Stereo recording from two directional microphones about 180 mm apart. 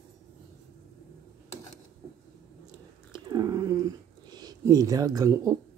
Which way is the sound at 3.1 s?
20° right (ahead or behind).